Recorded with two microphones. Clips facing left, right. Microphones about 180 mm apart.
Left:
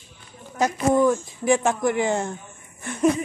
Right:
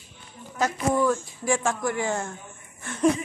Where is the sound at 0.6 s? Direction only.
20° left (ahead or behind).